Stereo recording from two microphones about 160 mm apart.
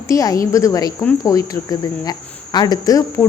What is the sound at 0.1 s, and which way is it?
Speech, 20° left (ahead or behind).